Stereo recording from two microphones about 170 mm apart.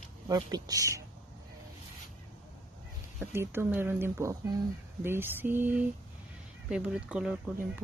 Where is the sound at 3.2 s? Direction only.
15° right (ahead or behind).